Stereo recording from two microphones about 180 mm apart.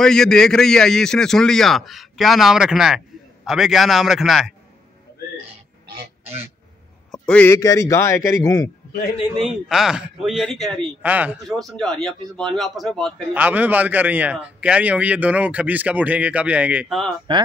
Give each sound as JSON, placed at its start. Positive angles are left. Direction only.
{"t": 0.0, "sound": "a man's voice", "side_deg": 5}
{"t": 7.1, "sound": "a man's voice", "side_deg": 5}
{"t": 9.4, "sound": "a man's voice", "side_deg": 0}
{"t": 11.0, "sound": "a man's voice", "side_deg": -10}
{"t": 11.4, "sound": "a man's voice", "side_deg": 0}
{"t": 17.3, "sound": "speech", "side_deg": -25}